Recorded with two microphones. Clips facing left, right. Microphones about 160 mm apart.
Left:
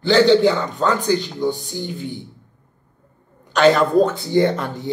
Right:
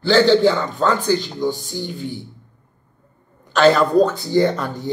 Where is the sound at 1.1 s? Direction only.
40° right (ahead or behind).